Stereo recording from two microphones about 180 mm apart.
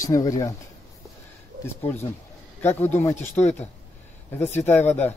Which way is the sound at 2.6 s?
10° left (ahead or behind).